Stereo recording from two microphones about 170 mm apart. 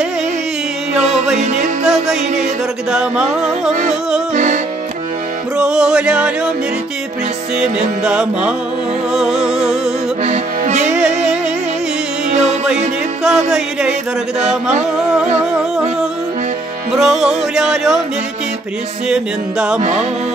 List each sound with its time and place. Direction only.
1.9 s music: 5° right (ahead or behind)
5.6 s music: 5° right (ahead or behind)
7.6 s music: 5° right (ahead or behind)
10.2 s music: 45° right (ahead or behind)
10.9 s music: 5° right (ahead or behind)
12.3 s music: 40° right (ahead or behind)
13.2 s music: 5° right (ahead or behind)
16.9 s music: centre (ahead or behind)
19.0 s music: 5° right (ahead or behind)
19.8 s music: 40° right (ahead or behind)